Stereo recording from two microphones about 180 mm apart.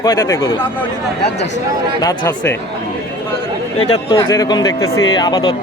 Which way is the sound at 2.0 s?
15° left (ahead or behind).